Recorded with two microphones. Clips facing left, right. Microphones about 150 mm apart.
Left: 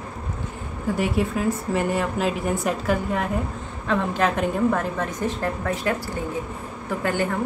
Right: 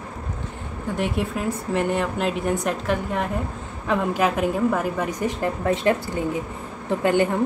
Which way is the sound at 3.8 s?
10° right (ahead or behind).